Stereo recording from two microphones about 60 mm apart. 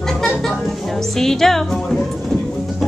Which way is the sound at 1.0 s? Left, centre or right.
Centre.